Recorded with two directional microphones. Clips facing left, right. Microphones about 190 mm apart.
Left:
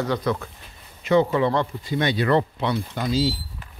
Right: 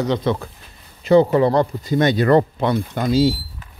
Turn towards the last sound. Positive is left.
turn(degrees=-50)  # may be behind; listen again after turning